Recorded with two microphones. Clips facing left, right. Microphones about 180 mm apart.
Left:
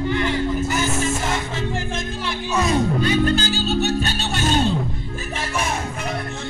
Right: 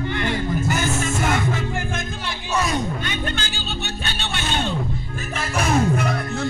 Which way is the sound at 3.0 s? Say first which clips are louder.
Left 9 dB; 35° left (ahead or behind).